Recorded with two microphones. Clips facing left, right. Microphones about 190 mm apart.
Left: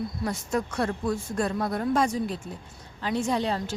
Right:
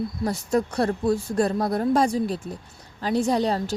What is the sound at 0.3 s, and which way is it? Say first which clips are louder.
A woman's voice: right 6 dB; 35° right (ahead or behind).